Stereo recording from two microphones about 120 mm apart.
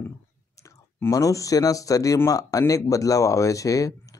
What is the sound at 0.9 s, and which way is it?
Speech, 25° left (ahead or behind).